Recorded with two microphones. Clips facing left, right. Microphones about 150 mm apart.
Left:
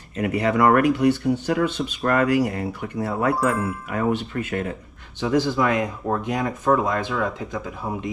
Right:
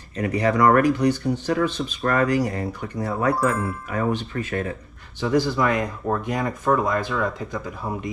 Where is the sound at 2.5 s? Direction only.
25° left (ahead or behind).